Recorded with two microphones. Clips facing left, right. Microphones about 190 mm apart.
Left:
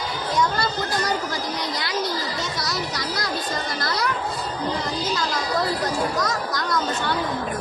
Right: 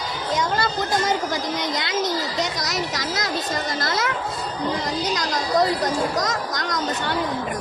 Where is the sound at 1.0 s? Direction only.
20° right (ahead or behind).